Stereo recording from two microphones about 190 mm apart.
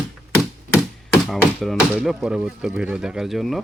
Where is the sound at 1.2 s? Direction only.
Centre (ahead or behind).